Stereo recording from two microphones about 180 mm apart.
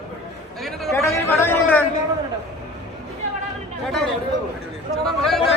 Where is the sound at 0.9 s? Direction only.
15° left (ahead or behind).